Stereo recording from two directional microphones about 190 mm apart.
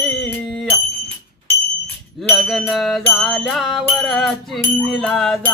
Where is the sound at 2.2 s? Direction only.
Centre (ahead or behind).